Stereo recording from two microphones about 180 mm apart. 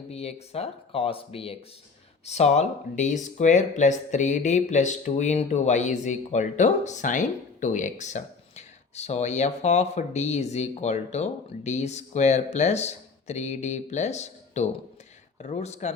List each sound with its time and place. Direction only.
0.1 s speech: 35° left (ahead or behind)